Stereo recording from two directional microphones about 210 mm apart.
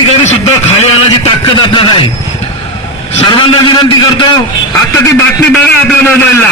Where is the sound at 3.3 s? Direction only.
20° left (ahead or behind).